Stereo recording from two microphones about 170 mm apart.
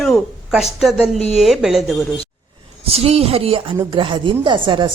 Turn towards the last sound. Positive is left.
turn(degrees=-30)  # may be behind; listen again after turning